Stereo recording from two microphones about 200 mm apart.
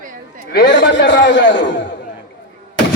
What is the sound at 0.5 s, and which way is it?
A man's voice, 55° left (ahead or behind).